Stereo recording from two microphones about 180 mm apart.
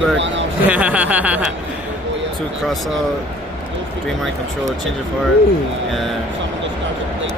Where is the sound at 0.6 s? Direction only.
10° right (ahead or behind).